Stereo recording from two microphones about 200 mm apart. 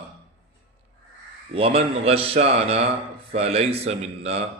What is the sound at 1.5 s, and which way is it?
A man's voice, 30° right (ahead or behind).